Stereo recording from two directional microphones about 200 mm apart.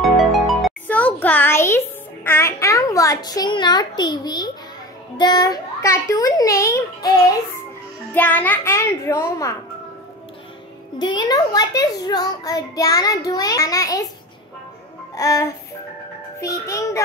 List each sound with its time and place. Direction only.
0.0 s music: centre (ahead or behind)
2.2 s a sound: 10° left (ahead or behind)
5.1 s a child's voice: 20° left (ahead or behind)
8.1 s a child's voice: 10° left (ahead or behind)
11.0 s a child's voice: 25° left (ahead or behind)
15.1 s a child's voice: 15° left (ahead or behind)